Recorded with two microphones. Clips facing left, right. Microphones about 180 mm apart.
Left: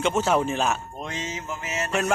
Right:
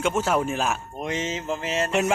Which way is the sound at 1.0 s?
20° right (ahead or behind).